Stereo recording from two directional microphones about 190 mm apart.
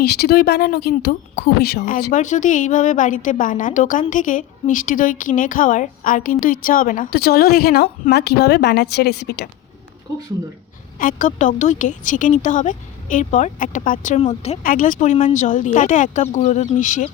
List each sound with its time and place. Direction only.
0.0 s a woman's voice: 55° left (ahead or behind)
10.9 s a woman's voice: 45° left (ahead or behind)
14.6 s a woman's voice: 45° left (ahead or behind)